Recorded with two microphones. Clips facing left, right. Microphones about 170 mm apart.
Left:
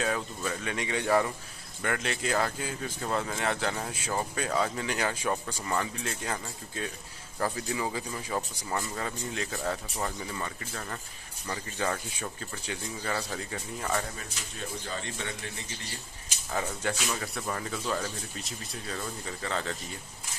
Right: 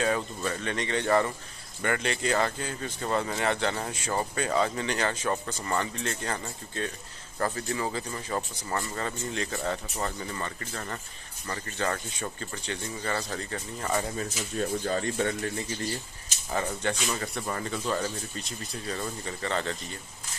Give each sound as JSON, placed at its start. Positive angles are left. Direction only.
{"t": 0.0, "sound": "speech", "side_deg": 0}
{"t": 14.9, "sound": "speech", "side_deg": -45}
{"t": 16.5, "sound": "speech", "side_deg": 0}